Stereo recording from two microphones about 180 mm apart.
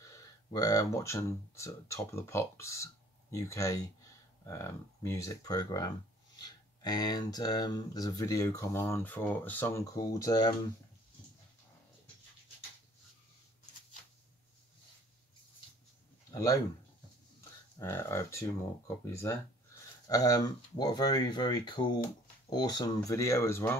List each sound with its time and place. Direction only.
0.1 s speech: 20° left (ahead or behind)
16.3 s a sound: 20° left (ahead or behind)
17.7 s speech: 15° left (ahead or behind)
20.1 s speech: 20° left (ahead or behind)